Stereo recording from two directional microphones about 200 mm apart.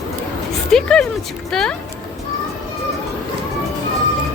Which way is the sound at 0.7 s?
5° left (ahead or behind).